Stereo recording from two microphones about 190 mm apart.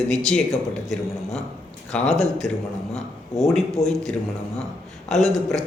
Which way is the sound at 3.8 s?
35° left (ahead or behind).